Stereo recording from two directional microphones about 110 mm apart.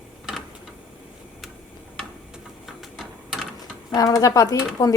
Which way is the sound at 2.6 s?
Centre (ahead or behind).